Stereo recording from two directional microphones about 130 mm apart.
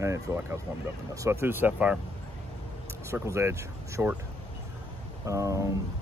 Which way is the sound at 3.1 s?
20° right (ahead or behind).